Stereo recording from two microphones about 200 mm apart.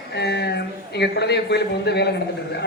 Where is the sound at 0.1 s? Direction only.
60° left (ahead or behind).